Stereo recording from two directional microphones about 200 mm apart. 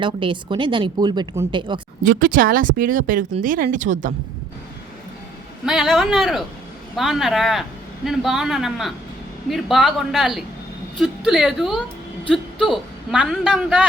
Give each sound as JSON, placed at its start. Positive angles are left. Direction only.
{"t": 0.0, "sound": "speech", "side_deg": -25}
{"t": 2.0, "sound": "speech", "side_deg": -45}
{"t": 5.6, "sound": "a man's voice", "side_deg": 0}